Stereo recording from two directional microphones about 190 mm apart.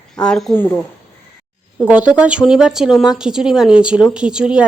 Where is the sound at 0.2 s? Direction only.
5° left (ahead or behind).